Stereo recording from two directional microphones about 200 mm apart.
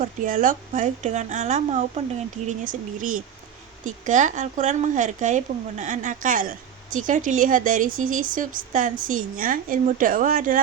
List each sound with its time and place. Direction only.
0.0 s speech: 40° right (ahead or behind)